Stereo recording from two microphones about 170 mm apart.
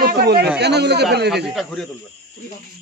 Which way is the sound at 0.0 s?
70° right (ahead or behind).